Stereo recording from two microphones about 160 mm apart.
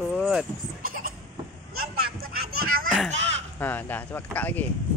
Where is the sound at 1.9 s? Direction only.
70° right (ahead or behind).